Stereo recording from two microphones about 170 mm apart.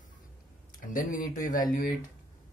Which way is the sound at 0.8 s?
50° left (ahead or behind).